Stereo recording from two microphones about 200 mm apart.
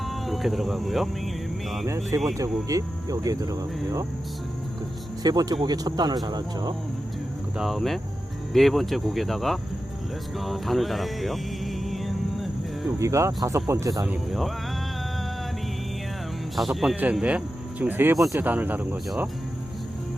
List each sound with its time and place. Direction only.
0.0 s speech: centre (ahead or behind)
2.1 s speech: 15° right (ahead or behind)
5.2 s speech: 20° right (ahead or behind)
7.6 s speech: centre (ahead or behind)
10.3 s music: centre (ahead or behind)
13.0 s speech: 15° right (ahead or behind)
14.1 s speech: centre (ahead or behind)
16.6 s speech: centre (ahead or behind)